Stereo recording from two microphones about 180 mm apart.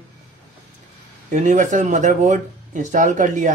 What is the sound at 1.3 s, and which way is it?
Speech, 45° right (ahead or behind).